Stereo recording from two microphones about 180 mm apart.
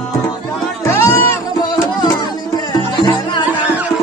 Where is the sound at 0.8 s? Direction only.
15° left (ahead or behind).